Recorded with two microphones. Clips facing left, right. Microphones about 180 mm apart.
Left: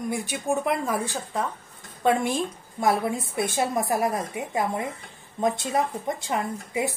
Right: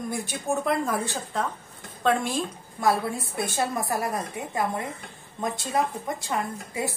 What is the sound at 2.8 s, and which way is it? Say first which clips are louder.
A woman's voice: left 1 dB; 20° left (ahead or behind).